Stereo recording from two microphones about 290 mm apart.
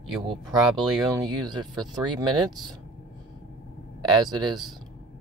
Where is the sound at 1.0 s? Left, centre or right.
Centre.